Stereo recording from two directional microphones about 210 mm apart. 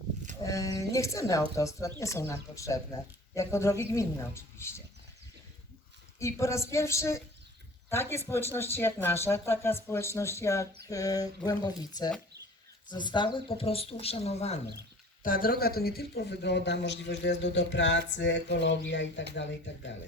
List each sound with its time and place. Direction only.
0.4 s speech: 15° left (ahead or behind)
6.1 s speech: 15° left (ahead or behind); by 14.6 s 30° left (ahead or behind)
15.2 s speech: 45° left (ahead or behind); by 18.0 s 60° left (ahead or behind)
18.2 s a sound: 55° left (ahead or behind)